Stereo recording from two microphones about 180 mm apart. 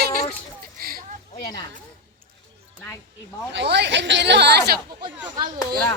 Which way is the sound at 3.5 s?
70° right (ahead or behind).